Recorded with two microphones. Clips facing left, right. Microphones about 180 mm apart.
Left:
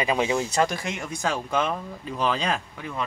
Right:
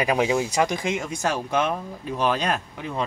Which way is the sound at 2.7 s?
25° right (ahead or behind).